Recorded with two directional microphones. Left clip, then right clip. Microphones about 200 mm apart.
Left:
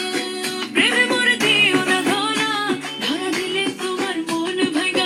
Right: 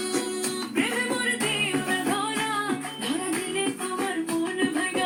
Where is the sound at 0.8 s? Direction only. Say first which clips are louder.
Left 10 dB; 40° left (ahead or behind).